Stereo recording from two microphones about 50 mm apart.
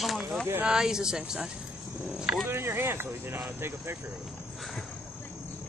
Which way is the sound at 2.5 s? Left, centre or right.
Right.